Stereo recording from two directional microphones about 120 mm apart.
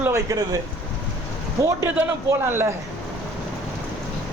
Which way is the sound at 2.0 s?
20° right (ahead or behind).